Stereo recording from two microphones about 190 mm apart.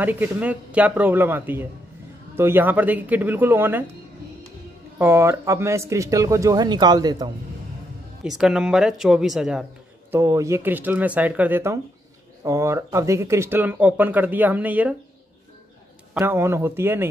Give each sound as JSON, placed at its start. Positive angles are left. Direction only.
{"t": 0.0, "sound": "speech", "side_deg": -10}
{"t": 4.9, "sound": "speech", "side_deg": -15}
{"t": 8.2, "sound": "speech", "side_deg": -5}
{"t": 10.1, "sound": "speech", "side_deg": -15}
{"t": 16.2, "sound": "speech", "side_deg": -15}